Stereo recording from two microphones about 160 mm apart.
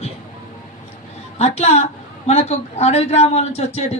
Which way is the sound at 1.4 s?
40° left (ahead or behind).